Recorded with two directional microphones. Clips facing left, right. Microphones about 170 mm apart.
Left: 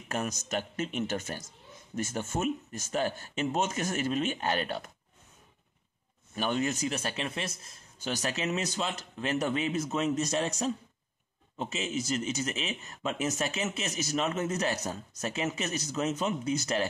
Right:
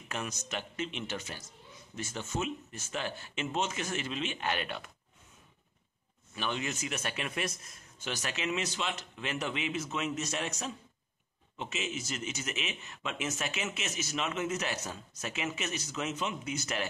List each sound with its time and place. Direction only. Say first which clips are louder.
0.1 s speech: left 5 dB; 40° left (ahead or behind)
6.3 s speech: left 6 dB; 45° left (ahead or behind)